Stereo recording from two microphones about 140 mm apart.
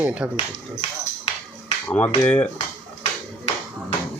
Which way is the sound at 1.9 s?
10° left (ahead or behind).